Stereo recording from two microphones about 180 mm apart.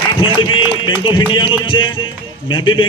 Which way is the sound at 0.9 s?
25° left (ahead or behind).